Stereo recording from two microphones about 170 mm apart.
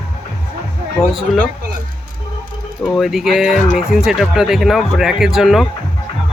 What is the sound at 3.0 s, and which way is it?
Speech, centre (ahead or behind).